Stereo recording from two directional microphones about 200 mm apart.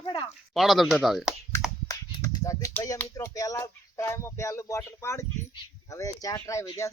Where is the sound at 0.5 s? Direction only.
Centre (ahead or behind).